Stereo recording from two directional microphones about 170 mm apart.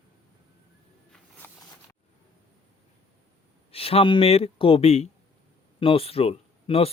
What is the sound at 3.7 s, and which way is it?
Speech, 35° left (ahead or behind).